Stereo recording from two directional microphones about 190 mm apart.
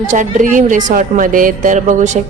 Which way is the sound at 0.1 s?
40° right (ahead or behind).